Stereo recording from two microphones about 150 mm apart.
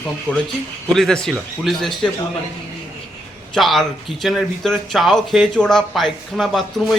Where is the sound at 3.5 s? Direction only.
Centre (ahead or behind).